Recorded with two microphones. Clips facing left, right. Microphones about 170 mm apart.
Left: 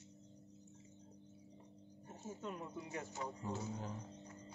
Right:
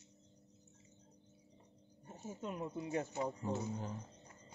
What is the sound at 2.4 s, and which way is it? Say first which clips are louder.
Speech: right 6 dB; 20° right (ahead or behind).